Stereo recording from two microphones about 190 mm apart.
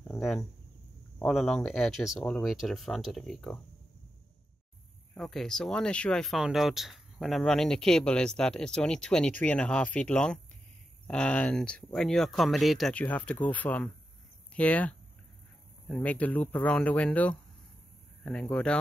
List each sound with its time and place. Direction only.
0.0 s a sound: centre (ahead or behind)
1.2 s speech: centre (ahead or behind)
5.1 s speech: centre (ahead or behind)